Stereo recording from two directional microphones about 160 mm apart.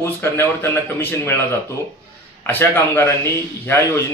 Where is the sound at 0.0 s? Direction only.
15° left (ahead or behind).